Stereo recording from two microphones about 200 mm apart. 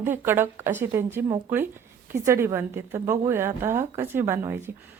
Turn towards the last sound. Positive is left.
turn(degrees=-10)  # may be behind; listen again after turning